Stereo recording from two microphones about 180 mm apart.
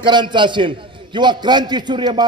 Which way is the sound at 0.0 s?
25° right (ahead or behind).